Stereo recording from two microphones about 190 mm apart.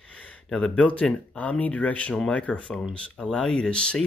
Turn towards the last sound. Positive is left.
turn(degrees=5)  # may be behind; listen again after turning